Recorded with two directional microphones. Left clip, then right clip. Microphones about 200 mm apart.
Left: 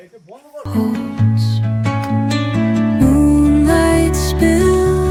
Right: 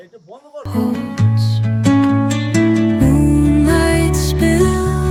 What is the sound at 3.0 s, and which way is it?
Music, centre (ahead or behind).